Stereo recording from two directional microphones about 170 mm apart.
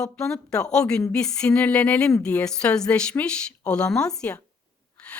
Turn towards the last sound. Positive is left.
turn(degrees=5)  # may be behind; listen again after turning